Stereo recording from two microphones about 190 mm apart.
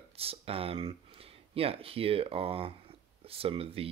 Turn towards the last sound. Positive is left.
turn(degrees=-30)  # may be behind; listen again after turning